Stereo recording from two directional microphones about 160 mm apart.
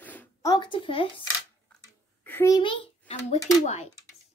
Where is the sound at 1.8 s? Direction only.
15° left (ahead or behind).